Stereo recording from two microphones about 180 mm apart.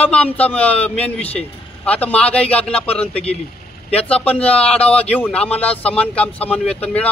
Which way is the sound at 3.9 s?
5° left (ahead or behind).